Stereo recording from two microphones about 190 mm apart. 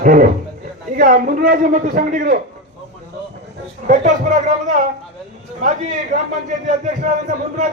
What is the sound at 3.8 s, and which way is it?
Speech, 40° right (ahead or behind).